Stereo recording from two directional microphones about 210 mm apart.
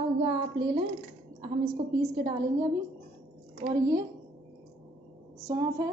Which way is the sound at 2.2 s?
20° right (ahead or behind).